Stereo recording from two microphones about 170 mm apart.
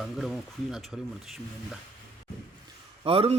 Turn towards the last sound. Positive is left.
turn(degrees=-35)  # may be behind; listen again after turning